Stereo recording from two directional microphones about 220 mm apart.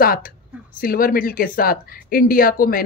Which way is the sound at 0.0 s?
40° left (ahead or behind).